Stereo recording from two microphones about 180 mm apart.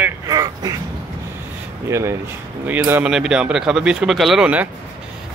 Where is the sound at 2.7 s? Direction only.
10° right (ahead or behind).